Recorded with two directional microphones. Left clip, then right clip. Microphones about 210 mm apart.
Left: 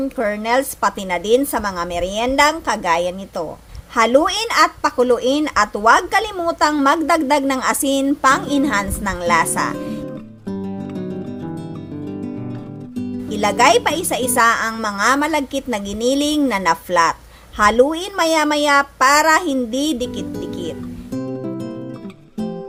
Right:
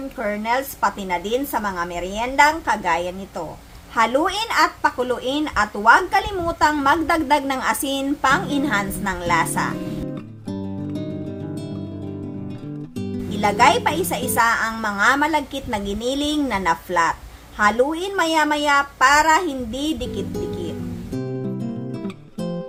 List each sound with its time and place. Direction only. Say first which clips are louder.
0.2 s speech: left 3 dB; 35° left (ahead or behind)
10.5 s music: left 1 dB; centre (ahead or behind)
13.3 s speech: left 2 dB; 30° left (ahead or behind)
20.3 s speech: even; centre (ahead or behind)
21.1 s music: left 3 dB; centre (ahead or behind)